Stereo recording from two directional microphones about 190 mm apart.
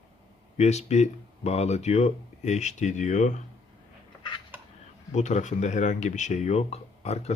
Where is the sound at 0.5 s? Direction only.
35° left (ahead or behind).